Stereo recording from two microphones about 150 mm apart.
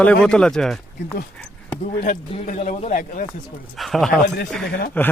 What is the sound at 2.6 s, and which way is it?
Speech, 55° left (ahead or behind).